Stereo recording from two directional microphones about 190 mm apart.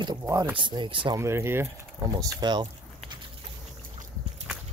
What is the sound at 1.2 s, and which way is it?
Speech, 15° right (ahead or behind).